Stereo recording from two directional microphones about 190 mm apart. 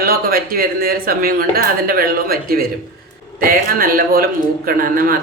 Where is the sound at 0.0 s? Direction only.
55° right (ahead or behind).